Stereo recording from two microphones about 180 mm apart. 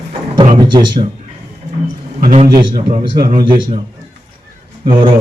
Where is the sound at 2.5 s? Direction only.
20° right (ahead or behind).